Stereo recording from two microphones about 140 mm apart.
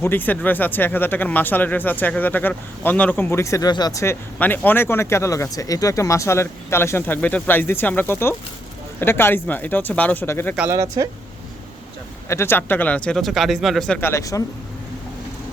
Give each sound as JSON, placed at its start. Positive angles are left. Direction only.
{"t": 0.0, "sound": "speech", "side_deg": 15}
{"t": 10.7, "sound": "speech", "side_deg": -20}
{"t": 12.3, "sound": "speech", "side_deg": 15}
{"t": 14.0, "sound": "speech", "side_deg": 20}